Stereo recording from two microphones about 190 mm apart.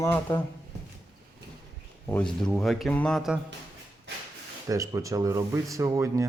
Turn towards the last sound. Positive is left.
turn(degrees=-15)  # may be behind; listen again after turning